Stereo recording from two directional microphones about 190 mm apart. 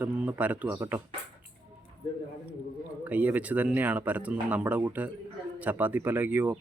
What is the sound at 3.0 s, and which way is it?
Speech, 10° right (ahead or behind).